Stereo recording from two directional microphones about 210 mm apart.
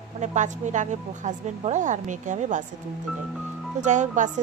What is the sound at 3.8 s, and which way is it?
Speech, 35° right (ahead or behind).